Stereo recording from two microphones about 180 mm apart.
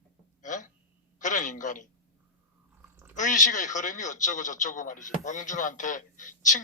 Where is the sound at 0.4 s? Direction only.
45° left (ahead or behind).